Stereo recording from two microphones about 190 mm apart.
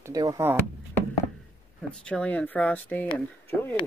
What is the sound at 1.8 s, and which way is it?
Speech, 5° left (ahead or behind).